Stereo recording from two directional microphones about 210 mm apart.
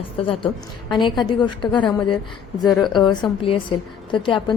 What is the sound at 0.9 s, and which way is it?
Speech, 20° left (ahead or behind).